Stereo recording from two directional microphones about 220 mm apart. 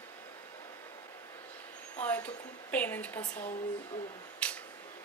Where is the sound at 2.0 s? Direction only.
5° left (ahead or behind).